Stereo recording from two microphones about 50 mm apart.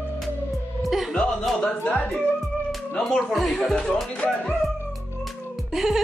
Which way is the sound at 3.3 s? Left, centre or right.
Centre.